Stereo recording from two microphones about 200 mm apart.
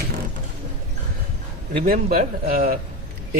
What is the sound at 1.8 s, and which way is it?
Speech, 45° right (ahead or behind).